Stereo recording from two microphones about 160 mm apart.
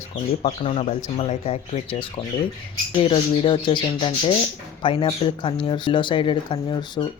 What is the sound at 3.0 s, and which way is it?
Speech, 30° left (ahead or behind).